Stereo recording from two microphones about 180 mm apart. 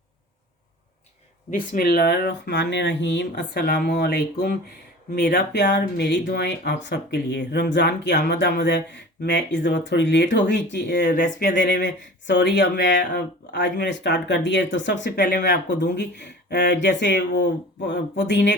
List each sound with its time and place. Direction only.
1.5 s speech: 50° left (ahead or behind); by 11.0 s 70° left (ahead or behind)
11.0 s speech: 45° left (ahead or behind)
11.5 s speech: 75° left (ahead or behind)
16.5 s speech: 75° left (ahead or behind)